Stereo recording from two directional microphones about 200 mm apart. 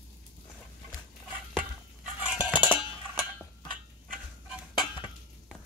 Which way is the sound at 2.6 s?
25° left (ahead or behind).